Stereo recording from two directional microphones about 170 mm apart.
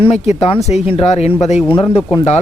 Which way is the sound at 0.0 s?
40° left (ahead or behind).